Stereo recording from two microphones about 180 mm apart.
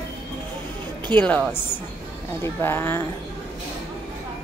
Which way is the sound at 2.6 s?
15° left (ahead or behind).